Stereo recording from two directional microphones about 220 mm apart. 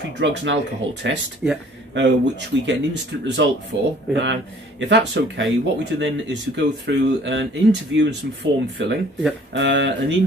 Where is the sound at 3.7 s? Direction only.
55° right (ahead or behind).